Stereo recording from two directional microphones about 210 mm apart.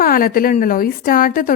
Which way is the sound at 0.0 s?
45° left (ahead or behind).